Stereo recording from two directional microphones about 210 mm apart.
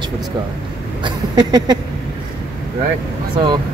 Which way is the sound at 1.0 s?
20° right (ahead or behind).